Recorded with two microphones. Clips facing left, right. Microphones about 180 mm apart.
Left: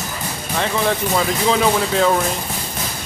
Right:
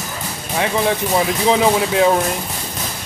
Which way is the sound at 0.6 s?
15° right (ahead or behind).